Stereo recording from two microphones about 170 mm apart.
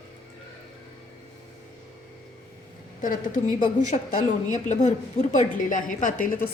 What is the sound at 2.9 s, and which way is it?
A woman's voice, 50° left (ahead or behind).